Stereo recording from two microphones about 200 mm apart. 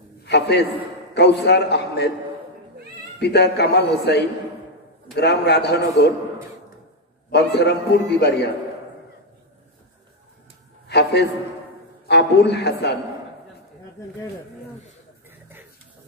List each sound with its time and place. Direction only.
0.2 s a sound: 55° left (ahead or behind)
1.1 s a man's voice: 55° left (ahead or behind)
3.2 s a man's voice: 55° left (ahead or behind)
7.2 s a man's voice: 55° left (ahead or behind)
10.9 s a man's voice: 55° left (ahead or behind)